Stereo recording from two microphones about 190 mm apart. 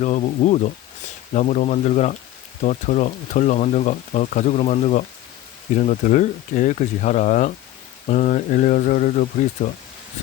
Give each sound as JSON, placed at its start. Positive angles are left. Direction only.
{"t": 0.0, "sound": "speech", "side_deg": 40}